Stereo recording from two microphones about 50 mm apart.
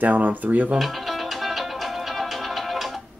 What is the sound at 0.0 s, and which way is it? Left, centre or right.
Speech, right.